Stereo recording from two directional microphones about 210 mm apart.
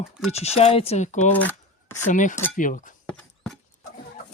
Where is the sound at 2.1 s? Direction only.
35° left (ahead or behind).